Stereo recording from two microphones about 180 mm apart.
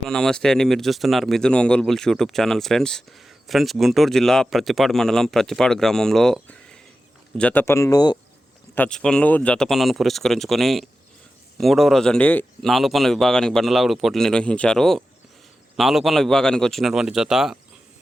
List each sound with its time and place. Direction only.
0.1 s speech: 5° left (ahead or behind); by 8.2 s 20° left (ahead or behind)
8.7 s speech: 5° left (ahead or behind)